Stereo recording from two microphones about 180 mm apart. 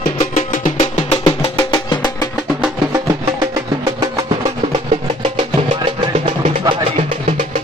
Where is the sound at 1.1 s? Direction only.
25° left (ahead or behind).